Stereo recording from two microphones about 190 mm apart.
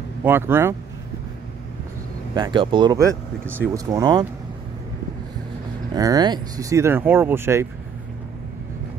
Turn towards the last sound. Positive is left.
turn(degrees=-15)  # may be behind; listen again after turning